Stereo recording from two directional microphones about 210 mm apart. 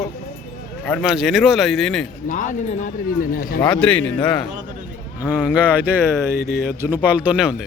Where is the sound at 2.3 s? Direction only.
40° left (ahead or behind).